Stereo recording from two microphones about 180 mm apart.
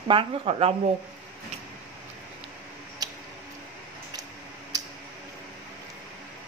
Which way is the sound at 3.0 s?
20° right (ahead or behind).